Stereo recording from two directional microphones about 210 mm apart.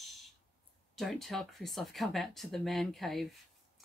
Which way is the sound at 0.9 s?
Centre (ahead or behind).